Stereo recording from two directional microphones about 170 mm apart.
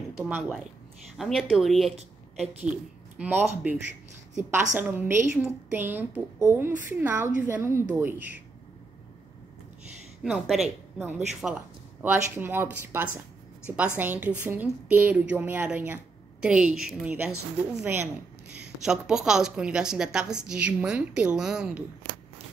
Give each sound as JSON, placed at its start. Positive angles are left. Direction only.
{"t": 0.1, "sound": "a woman's voice", "side_deg": -5}
{"t": 3.2, "sound": "a woman's voice", "side_deg": -10}
{"t": 10.2, "sound": "a woman's voice", "side_deg": 0}
{"t": 11.0, "sound": "a woman's voice", "side_deg": -10}